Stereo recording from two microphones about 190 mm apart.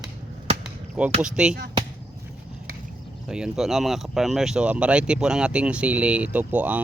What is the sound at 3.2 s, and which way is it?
Speech, 5° right (ahead or behind).